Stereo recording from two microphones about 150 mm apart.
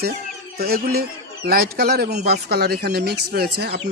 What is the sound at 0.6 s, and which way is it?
Speech, 90° right.